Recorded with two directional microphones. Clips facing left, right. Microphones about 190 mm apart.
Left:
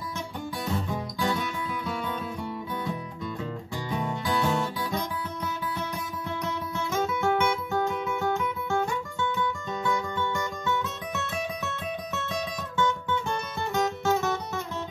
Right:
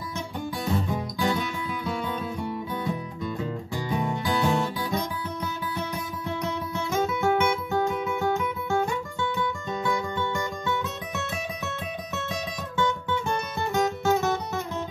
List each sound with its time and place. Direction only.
3.9 s music: 15° right (ahead or behind)
6.4 s guitar: 15° right (ahead or behind)
9.7 s music: 15° right (ahead or behind)
10.1 s music: 25° right (ahead or behind)
12.7 s music: 15° right (ahead or behind)